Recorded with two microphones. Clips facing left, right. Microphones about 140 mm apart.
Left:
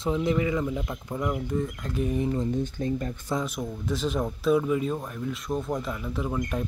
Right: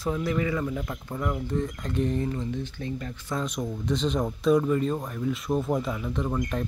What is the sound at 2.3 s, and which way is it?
Speech, 40° left (ahead or behind).